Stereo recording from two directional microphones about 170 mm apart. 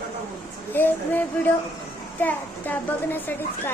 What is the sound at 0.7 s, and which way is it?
A woman's voice, 10° left (ahead or behind).